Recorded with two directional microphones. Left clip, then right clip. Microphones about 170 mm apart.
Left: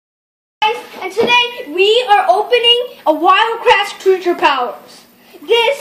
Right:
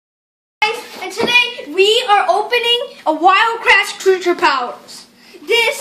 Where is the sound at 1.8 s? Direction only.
40° right (ahead or behind).